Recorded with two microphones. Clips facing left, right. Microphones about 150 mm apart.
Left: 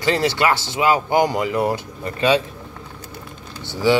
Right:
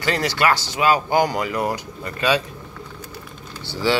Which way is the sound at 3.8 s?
20° left (ahead or behind).